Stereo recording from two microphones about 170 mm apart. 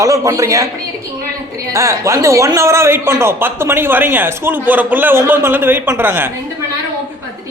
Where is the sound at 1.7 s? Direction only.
15° right (ahead or behind).